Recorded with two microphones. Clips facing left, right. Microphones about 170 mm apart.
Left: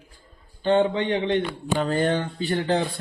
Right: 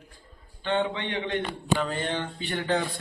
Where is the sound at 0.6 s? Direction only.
35° left (ahead or behind).